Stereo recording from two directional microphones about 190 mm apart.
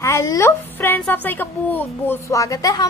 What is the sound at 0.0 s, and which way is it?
A woman's voice, 15° left (ahead or behind).